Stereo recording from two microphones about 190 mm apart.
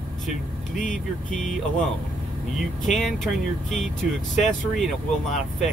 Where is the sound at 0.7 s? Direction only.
45° left (ahead or behind).